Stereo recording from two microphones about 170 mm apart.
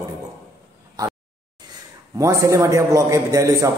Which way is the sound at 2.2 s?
20° right (ahead or behind).